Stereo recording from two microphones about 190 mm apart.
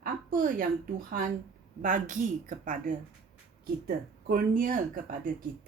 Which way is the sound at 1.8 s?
40° right (ahead or behind).